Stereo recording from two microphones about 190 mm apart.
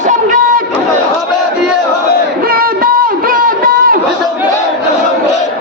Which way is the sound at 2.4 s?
50° right (ahead or behind).